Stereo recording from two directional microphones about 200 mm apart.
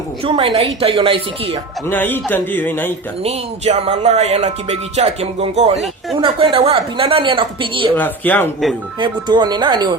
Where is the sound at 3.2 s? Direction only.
30° right (ahead or behind).